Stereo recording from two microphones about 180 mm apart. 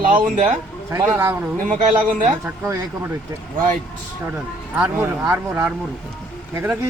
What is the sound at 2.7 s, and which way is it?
Speech, 15° right (ahead or behind).